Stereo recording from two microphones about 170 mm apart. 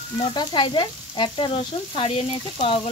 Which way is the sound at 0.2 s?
25° left (ahead or behind).